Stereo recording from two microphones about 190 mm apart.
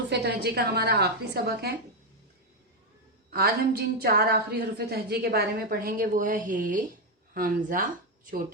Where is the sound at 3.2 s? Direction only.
55° right (ahead or behind).